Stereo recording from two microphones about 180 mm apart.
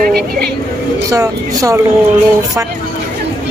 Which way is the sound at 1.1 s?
20° right (ahead or behind).